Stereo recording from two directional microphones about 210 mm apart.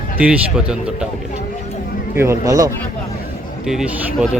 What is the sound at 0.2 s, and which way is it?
Speech, 5° right (ahead or behind).